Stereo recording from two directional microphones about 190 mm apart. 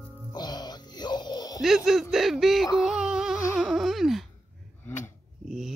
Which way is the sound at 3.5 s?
5° right (ahead or behind).